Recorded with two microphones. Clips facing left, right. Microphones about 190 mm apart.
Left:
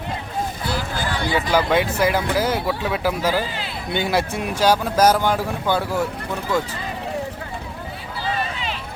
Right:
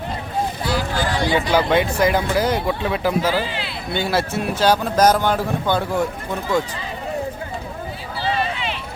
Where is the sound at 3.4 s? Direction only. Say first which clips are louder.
Right 2 dB; 45° left (ahead or behind).